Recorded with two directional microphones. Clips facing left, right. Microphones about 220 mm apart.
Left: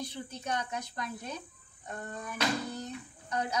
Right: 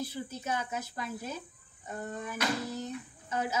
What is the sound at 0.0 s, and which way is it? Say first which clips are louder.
Speech: right 2 dB; 5° right (ahead or behind).